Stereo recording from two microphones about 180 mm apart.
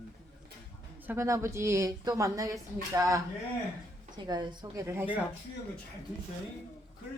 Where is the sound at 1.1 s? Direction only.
15° right (ahead or behind).